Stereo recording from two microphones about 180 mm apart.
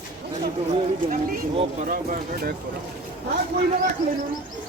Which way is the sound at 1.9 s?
50° right (ahead or behind).